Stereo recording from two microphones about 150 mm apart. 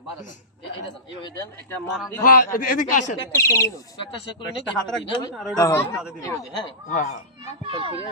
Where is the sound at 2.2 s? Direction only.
65° left (ahead or behind).